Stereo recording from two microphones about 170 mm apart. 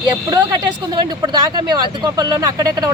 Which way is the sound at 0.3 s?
20° right (ahead or behind).